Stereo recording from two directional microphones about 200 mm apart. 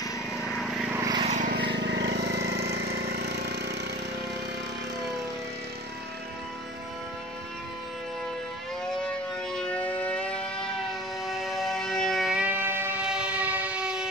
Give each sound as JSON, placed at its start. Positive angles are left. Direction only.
{"t": 0.9, "sound": "vehicle", "side_deg": -20}
{"t": 1.2, "sound": "vehicle", "side_deg": -35}
{"t": 1.7, "sound": "a sound", "side_deg": -60}
{"t": 3.0, "sound": "engine", "side_deg": -55}
{"t": 9.0, "sound": "music", "side_deg": 5}
{"t": 11.2, "sound": "a sound", "side_deg": 0}